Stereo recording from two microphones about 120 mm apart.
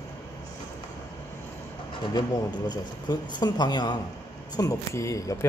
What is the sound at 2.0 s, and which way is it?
A man's voice, 40° left (ahead or behind).